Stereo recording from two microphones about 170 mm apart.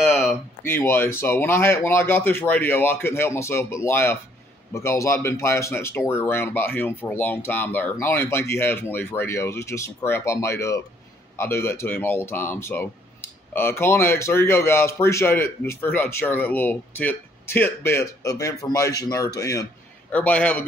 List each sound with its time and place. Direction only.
0.0 s a sound: centre (ahead or behind)
0.3 s speech: 15° left (ahead or behind)
20.1 s speech: 10° left (ahead or behind)